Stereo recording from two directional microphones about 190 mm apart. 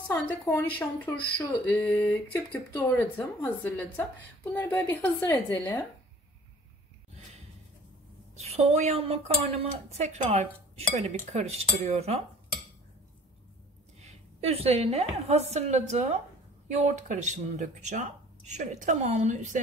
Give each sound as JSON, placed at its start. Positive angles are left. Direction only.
{"t": 0.1, "sound": "speech", "side_deg": 10}
{"t": 8.4, "sound": "speech", "side_deg": -35}
{"t": 14.0, "sound": "speech", "side_deg": -30}